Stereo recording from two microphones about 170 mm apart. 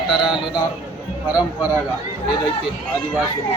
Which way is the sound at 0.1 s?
Centre (ahead or behind).